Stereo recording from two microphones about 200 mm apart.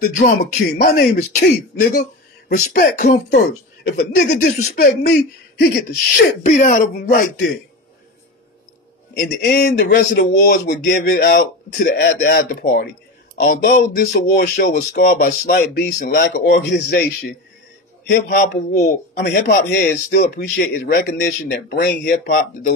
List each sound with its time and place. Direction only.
0.0 s speech: 50° left (ahead or behind)
6.4 s speech: 40° left (ahead or behind)
9.2 s speech: 55° left (ahead or behind)